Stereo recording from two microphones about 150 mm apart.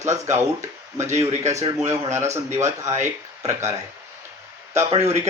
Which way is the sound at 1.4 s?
20° right (ahead or behind).